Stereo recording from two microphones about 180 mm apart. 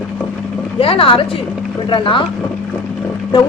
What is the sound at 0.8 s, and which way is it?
A woman's voice, 30° left (ahead or behind).